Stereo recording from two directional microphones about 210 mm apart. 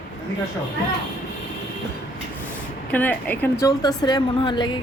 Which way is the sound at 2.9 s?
10° left (ahead or behind).